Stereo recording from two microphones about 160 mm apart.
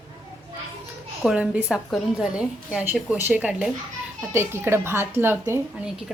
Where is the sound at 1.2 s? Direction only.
5° right (ahead or behind).